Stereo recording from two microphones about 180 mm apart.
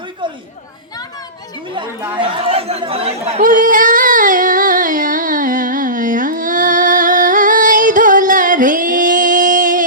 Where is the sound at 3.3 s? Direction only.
40° right (ahead or behind).